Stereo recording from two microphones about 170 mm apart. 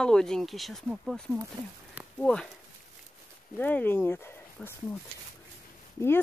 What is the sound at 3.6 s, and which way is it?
Speech, 10° left (ahead or behind).